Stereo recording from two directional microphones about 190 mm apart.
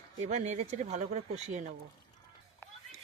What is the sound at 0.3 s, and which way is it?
Speech, 40° right (ahead or behind).